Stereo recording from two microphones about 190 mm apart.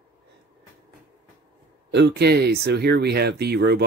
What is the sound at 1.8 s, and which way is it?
Speech, 65° right (ahead or behind).